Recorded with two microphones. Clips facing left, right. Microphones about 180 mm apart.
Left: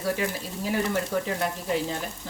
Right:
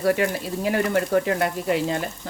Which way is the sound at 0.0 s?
65° right (ahead or behind).